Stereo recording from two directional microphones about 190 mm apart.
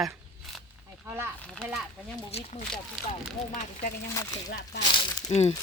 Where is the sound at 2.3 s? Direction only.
35° left (ahead or behind).